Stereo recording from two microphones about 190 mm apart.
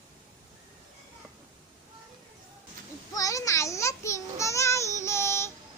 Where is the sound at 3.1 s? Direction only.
15° left (ahead or behind).